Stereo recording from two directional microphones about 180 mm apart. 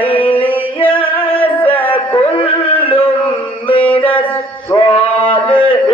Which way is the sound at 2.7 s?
10° left (ahead or behind).